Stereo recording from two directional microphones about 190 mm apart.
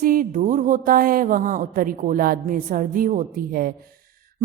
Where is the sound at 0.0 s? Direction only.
45° right (ahead or behind).